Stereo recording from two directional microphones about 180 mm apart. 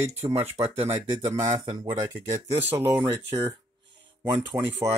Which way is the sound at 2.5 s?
10° right (ahead or behind).